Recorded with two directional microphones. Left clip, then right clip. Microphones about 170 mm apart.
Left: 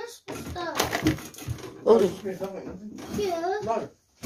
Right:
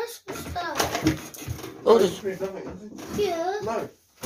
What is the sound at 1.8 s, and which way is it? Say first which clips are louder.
Speech: right 1 dB; 15° left (ahead or behind).